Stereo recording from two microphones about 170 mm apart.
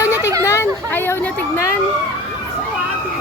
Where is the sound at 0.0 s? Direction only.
15° left (ahead or behind).